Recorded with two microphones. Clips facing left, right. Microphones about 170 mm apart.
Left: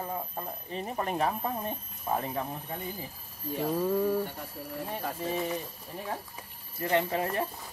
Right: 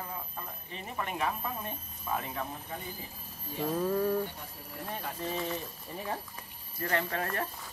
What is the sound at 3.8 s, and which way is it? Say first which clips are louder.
Speech: left 1 dB; 5° left (ahead or behind).